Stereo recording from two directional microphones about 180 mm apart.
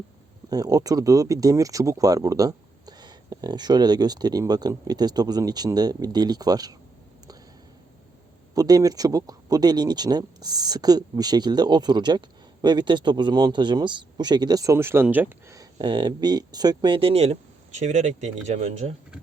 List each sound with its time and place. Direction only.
0.5 s speech: 20° right (ahead or behind)
8.5 s speech: 20° right (ahead or behind); by 18.9 s 40° right (ahead or behind)